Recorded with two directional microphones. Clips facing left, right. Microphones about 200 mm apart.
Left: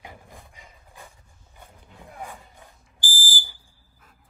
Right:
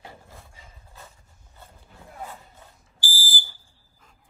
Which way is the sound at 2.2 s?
15° left (ahead or behind).